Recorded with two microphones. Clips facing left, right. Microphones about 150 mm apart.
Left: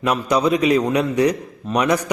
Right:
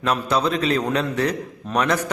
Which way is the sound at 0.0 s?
10° left (ahead or behind).